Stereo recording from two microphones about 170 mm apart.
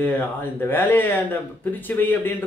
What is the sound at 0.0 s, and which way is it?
Speech, 10° left (ahead or behind).